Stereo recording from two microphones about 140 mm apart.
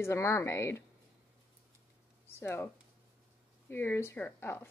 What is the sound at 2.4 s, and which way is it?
Speech, 15° left (ahead or behind).